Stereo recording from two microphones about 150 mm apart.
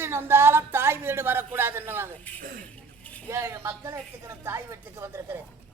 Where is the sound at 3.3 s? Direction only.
20° right (ahead or behind).